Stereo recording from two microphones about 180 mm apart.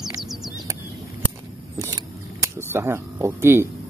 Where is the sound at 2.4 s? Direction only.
15° right (ahead or behind).